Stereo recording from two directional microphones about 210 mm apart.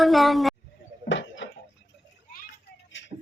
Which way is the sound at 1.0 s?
60° left (ahead or behind).